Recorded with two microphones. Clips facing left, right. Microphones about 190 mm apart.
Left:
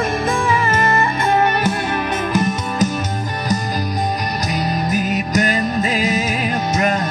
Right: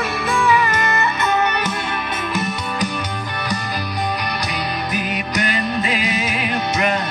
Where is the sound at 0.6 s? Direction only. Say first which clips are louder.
Left 3 dB; 45° left (ahead or behind).